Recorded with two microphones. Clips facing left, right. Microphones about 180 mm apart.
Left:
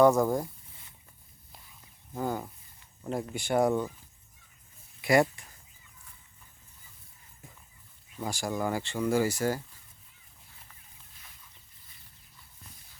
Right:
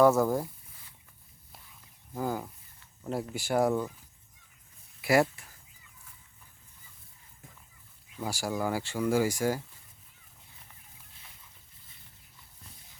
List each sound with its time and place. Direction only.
0.0 s speech: 5° right (ahead or behind)
2.1 s speech: centre (ahead or behind)
4.9 s a sound: 5° right (ahead or behind)
8.2 s speech: 10° right (ahead or behind)